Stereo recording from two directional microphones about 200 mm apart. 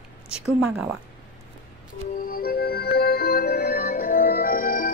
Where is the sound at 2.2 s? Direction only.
50° left (ahead or behind).